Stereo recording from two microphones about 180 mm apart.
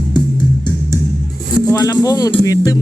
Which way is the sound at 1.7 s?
20° left (ahead or behind).